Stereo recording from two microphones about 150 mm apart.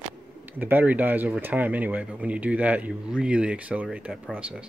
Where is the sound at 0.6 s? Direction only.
10° right (ahead or behind).